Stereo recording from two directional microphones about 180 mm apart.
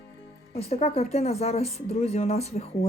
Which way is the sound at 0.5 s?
35° left (ahead or behind).